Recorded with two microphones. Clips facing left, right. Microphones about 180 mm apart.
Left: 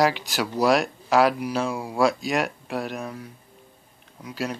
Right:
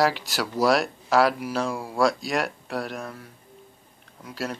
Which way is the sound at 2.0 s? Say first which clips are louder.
Left 1 dB; centre (ahead or behind).